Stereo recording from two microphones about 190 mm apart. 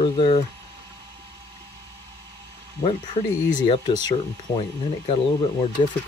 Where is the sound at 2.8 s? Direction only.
25° left (ahead or behind).